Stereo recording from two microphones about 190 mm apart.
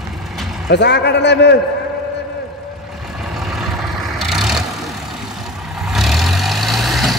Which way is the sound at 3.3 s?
Centre (ahead or behind).